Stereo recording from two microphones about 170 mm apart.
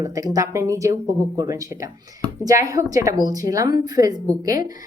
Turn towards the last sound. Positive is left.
turn(degrees=-20)  # may be behind; listen again after turning